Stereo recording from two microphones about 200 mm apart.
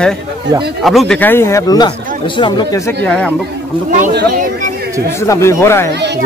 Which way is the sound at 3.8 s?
40° right (ahead or behind).